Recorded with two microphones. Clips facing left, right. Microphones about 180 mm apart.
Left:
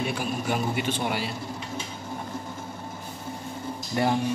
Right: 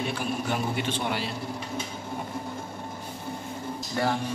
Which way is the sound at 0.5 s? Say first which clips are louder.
Left 4 dB; 10° left (ahead or behind).